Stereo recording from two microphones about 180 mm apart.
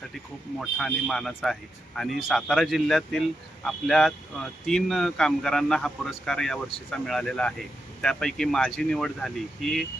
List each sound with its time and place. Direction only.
0.6 s a man's voice: 5° left (ahead or behind)